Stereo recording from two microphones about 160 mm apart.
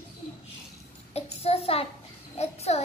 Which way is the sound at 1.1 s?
40° left (ahead or behind).